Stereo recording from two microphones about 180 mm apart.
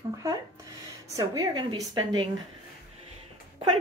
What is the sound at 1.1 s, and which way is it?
Speech, 20° right (ahead or behind).